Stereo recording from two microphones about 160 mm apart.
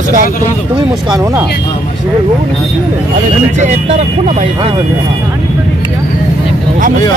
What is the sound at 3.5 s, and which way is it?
Speech, 45° right (ahead or behind).